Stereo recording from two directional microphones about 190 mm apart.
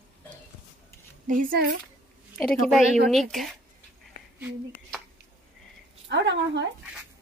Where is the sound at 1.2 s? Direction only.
45° right (ahead or behind).